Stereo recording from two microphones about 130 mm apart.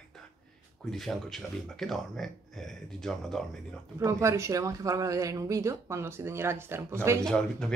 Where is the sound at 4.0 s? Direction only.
25° right (ahead or behind).